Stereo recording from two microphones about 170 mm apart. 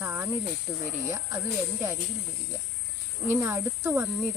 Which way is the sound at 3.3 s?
15° right (ahead or behind).